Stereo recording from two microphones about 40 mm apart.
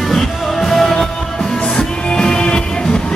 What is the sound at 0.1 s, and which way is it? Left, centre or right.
Music, centre.